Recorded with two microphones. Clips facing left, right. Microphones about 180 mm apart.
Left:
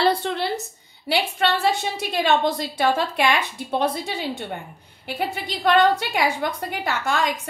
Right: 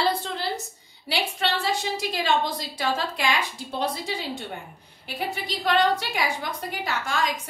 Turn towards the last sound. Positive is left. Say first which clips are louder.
# left 4 dB
turn(degrees=60)  # may be behind; listen again after turning